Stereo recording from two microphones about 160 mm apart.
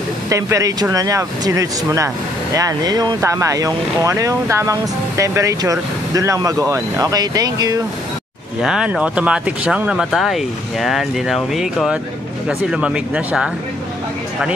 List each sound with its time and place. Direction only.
0.3 s speech: 20° right (ahead or behind)
8.6 s speech: 5° right (ahead or behind)